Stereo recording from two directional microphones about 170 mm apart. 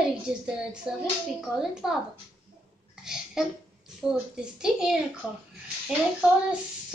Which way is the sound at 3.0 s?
5° right (ahead or behind).